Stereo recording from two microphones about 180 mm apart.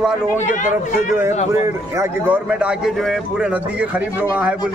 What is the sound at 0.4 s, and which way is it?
Speech, 45° left (ahead or behind).